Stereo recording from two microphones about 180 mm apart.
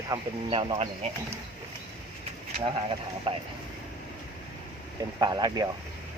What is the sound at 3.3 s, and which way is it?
Speech, 30° right (ahead or behind).